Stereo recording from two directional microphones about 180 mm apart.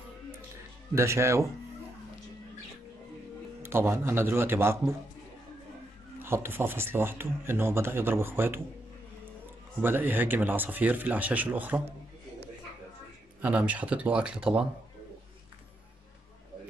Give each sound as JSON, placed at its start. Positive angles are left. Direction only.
{"t": 0.9, "sound": "speech", "side_deg": -15}
{"t": 3.6, "sound": "speech", "side_deg": -15}
{"t": 6.2, "sound": "speech", "side_deg": -15}
{"t": 9.8, "sound": "speech", "side_deg": -10}
{"t": 13.4, "sound": "speech", "side_deg": -10}